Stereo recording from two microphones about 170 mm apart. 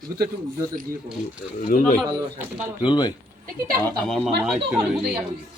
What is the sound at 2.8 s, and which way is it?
Speech, 25° left (ahead or behind).